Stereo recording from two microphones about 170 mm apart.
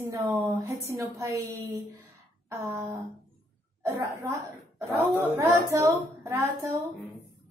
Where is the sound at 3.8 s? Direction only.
20° right (ahead or behind).